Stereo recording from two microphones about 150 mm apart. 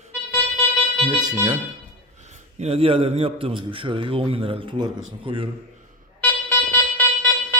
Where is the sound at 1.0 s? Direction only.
30° right (ahead or behind).